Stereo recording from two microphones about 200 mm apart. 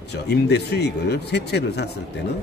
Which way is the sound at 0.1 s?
55° left (ahead or behind).